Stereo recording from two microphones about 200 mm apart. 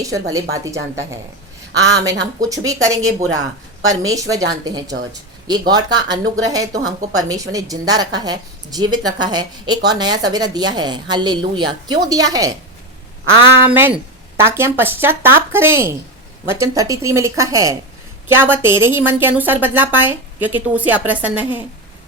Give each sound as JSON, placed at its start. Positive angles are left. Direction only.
{"t": 0.0, "sound": "a woman's voice", "side_deg": -15}
{"t": 1.7, "sound": "speech", "side_deg": -60}
{"t": 2.5, "sound": "a woman's voice", "side_deg": -15}
{"t": 13.6, "sound": "a woman's voice", "side_deg": -10}